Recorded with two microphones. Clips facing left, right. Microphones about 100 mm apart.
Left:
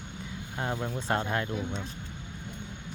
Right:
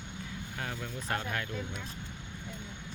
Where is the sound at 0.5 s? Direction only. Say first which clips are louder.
Left 8 dB; 30° left (ahead or behind).